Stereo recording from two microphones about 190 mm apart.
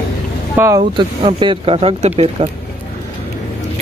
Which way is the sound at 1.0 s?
25° right (ahead or behind).